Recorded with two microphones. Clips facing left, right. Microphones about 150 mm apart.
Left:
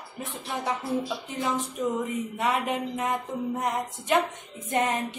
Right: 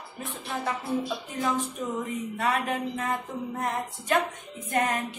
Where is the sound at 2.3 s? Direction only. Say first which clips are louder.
Even; 20° left (ahead or behind).